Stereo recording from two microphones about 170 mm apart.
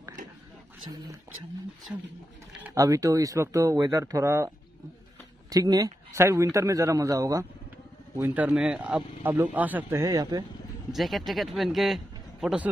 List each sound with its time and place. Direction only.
2.6 s a man's voice: 20° right (ahead or behind)
5.5 s a man's voice: 20° right (ahead or behind)
10.9 s speech: centre (ahead or behind)